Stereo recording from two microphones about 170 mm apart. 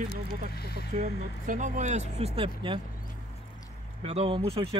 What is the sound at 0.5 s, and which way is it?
Speech, 70° left (ahead or behind).